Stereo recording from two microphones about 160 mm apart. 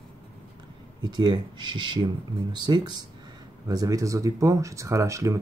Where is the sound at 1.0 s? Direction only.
25° right (ahead or behind).